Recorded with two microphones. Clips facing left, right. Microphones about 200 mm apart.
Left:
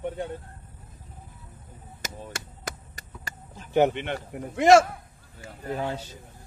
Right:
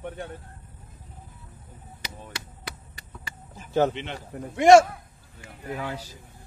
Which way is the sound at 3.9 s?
55° left (ahead or behind).